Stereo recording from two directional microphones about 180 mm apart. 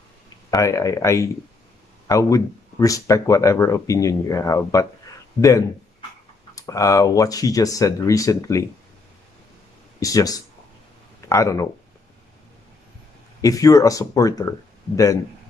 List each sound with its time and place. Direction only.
0.5 s speech: 20° left (ahead or behind)
9.9 s speech: 20° left (ahead or behind)
13.4 s speech: 20° left (ahead or behind)